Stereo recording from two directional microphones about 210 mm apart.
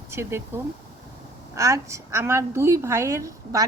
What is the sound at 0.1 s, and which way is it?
A woman's voice, 10° right (ahead or behind).